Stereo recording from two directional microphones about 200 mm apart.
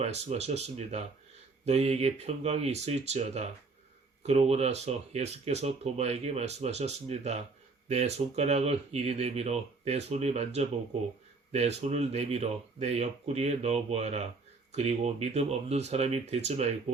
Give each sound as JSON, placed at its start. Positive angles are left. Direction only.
{"t": 0.0, "sound": "speech", "side_deg": -35}